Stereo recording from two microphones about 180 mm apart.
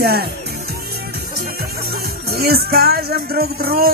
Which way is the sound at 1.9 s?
60° right (ahead or behind).